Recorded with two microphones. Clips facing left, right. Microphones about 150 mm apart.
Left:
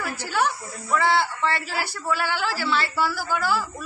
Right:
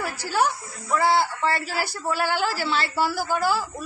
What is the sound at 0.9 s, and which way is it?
A woman's voice, 40° right (ahead or behind).